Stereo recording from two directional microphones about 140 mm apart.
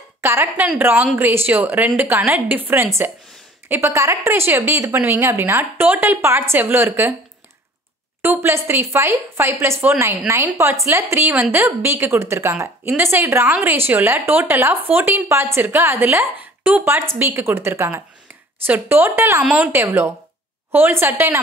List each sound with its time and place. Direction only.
0.2 s speech: 15° right (ahead or behind)
8.2 s speech: 15° right (ahead or behind)